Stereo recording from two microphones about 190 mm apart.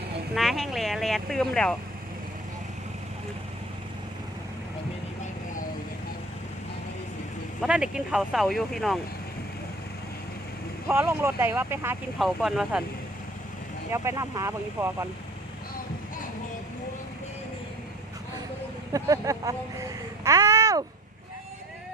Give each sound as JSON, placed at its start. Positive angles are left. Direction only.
{"t": 0.3, "sound": "speech", "side_deg": 0}
{"t": 7.6, "sound": "speech", "side_deg": -5}
{"t": 10.8, "sound": "speech", "side_deg": -15}
{"t": 13.9, "sound": "speech", "side_deg": -15}
{"t": 18.9, "sound": "a sound", "side_deg": -15}